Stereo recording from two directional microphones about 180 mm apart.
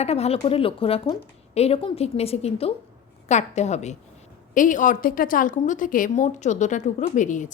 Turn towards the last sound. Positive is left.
turn(degrees=45)  # may be behind; listen again after turning